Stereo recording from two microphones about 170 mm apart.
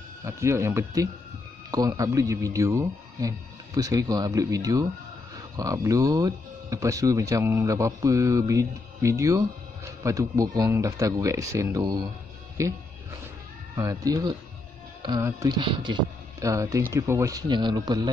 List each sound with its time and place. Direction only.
0.2 s speech: 15° right (ahead or behind)
13.7 s speech: 20° right (ahead or behind)
15.0 s music: 25° right (ahead or behind)
15.4 s speech: 25° right (ahead or behind)